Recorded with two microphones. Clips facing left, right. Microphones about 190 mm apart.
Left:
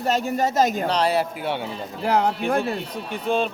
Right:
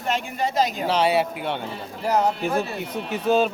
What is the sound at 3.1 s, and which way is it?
Speech, 5° right (ahead or behind).